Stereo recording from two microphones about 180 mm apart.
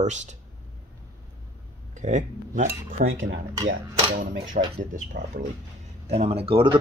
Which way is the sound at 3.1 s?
90° right.